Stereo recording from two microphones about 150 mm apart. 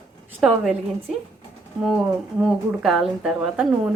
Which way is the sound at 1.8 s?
Centre (ahead or behind).